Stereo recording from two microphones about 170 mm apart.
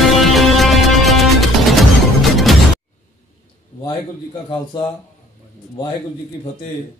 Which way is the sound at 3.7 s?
40° left (ahead or behind).